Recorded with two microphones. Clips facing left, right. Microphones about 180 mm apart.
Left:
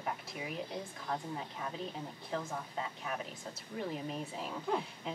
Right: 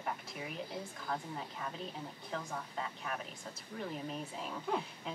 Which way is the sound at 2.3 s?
5° left (ahead or behind).